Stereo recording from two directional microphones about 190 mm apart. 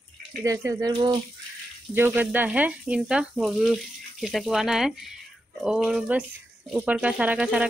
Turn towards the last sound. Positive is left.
turn(degrees=-5)  # may be behind; listen again after turning